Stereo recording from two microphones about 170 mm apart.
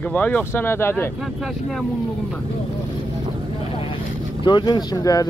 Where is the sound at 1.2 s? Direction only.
Centre (ahead or behind).